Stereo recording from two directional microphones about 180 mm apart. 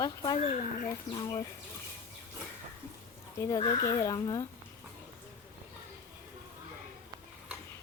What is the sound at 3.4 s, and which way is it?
Speech, 20° left (ahead or behind).